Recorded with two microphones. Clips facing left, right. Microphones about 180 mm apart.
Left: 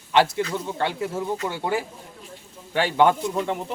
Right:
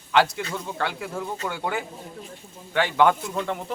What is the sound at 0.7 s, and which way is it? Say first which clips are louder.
A man's voice: left 3 dB; 25° left (ahead or behind).